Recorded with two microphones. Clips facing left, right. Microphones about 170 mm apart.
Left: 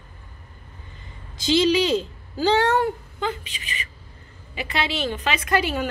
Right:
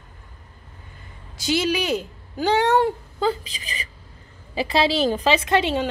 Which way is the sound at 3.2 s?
35° right (ahead or behind).